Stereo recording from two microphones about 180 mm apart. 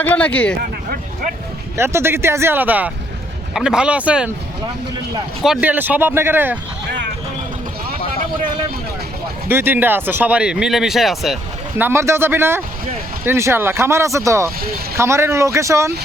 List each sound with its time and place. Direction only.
0.0 s speech: 10° left (ahead or behind)
1.7 s speech: 15° right (ahead or behind)
5.4 s speech: 5° right (ahead or behind)
9.5 s speech: 10° right (ahead or behind)
11.8 s speech: 15° right (ahead or behind)